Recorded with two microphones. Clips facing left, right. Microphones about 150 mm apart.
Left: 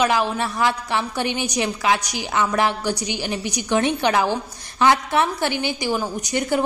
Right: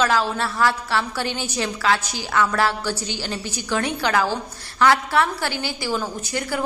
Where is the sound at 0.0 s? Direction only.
15° left (ahead or behind).